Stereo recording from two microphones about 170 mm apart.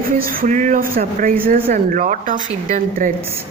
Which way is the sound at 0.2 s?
55° right (ahead or behind).